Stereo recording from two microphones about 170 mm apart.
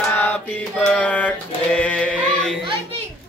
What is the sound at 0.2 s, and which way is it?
Mantra, 10° left (ahead or behind).